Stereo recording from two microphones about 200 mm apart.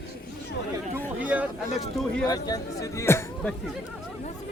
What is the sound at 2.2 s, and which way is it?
Speech, 20° left (ahead or behind).